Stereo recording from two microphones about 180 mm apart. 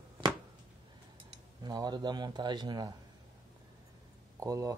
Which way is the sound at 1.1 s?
20° right (ahead or behind).